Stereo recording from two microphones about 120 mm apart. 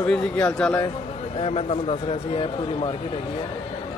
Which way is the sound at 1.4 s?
55° left (ahead or behind).